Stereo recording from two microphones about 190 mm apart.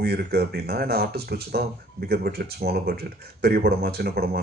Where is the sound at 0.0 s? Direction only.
55° right (ahead or behind).